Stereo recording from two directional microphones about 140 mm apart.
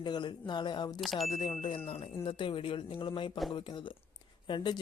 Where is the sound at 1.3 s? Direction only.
35° left (ahead or behind).